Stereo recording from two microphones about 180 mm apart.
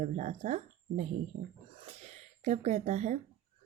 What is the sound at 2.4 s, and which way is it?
Speech, 40° right (ahead or behind).